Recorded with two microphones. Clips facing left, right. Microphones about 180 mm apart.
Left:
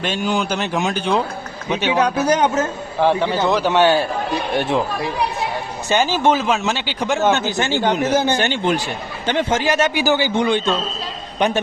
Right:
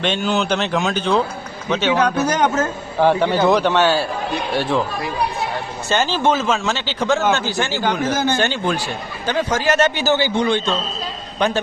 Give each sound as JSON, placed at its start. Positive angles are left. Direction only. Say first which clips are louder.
{"t": 0.0, "sound": "speech", "louder": "right 1 dB", "side_deg": 10}
{"t": 3.0, "sound": "a man's voice", "louder": "right 2 dB", "side_deg": 0}
{"t": 3.7, "sound": "speech", "louder": "left 2 dB", "side_deg": 15}
{"t": 5.9, "sound": "speech", "louder": "left 1 dB", "side_deg": 15}
{"t": 9.7, "sound": "a man's voice", "louder": "right 2 dB", "side_deg": 10}